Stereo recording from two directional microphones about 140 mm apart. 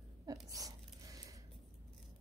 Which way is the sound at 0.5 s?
25° right (ahead or behind).